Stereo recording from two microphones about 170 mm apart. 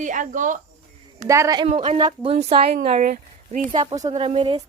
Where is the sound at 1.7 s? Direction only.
40° right (ahead or behind).